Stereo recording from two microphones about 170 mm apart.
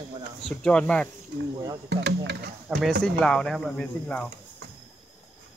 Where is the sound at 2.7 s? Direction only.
5° right (ahead or behind).